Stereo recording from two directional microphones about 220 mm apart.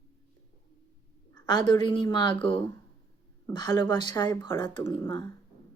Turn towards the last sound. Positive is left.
turn(degrees=20)  # may be behind; listen again after turning